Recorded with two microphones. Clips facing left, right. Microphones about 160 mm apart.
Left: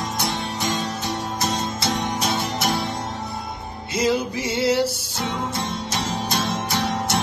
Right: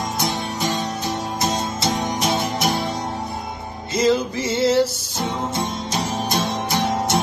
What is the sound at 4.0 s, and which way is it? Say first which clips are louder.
Music: right 3 dB; 15° left (ahead or behind).